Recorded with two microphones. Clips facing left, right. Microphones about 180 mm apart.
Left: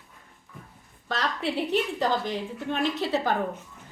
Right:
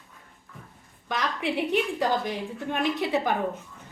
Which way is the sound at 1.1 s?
15° right (ahead or behind).